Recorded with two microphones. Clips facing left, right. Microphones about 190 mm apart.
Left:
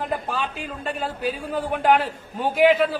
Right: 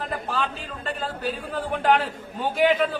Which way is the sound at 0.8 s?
10° left (ahead or behind).